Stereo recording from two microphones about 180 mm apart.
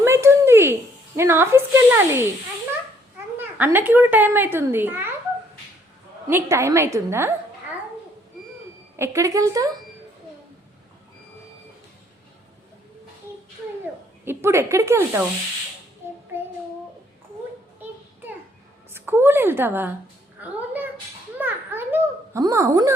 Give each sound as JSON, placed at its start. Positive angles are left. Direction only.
{"t": 0.0, "sound": "a sound", "side_deg": -15}
{"t": 3.3, "sound": "speech", "side_deg": -10}
{"t": 6.2, "sound": "speech", "side_deg": -15}
{"t": 9.0, "sound": "speech", "side_deg": -15}
{"t": 14.3, "sound": "speech", "side_deg": -15}
{"t": 18.9, "sound": "a woman's voice", "side_deg": -10}